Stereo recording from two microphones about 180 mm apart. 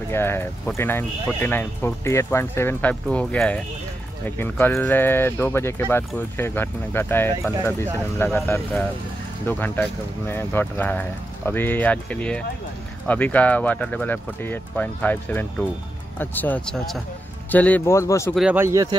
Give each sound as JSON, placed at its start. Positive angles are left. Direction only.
{"t": 0.1, "sound": "speech", "side_deg": 15}
{"t": 18.3, "sound": "speech", "side_deg": -5}